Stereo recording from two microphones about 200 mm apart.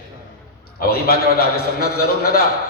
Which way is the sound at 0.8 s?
50° left (ahead or behind).